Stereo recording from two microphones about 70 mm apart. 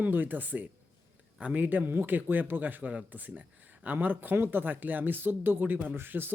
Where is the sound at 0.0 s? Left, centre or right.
Right.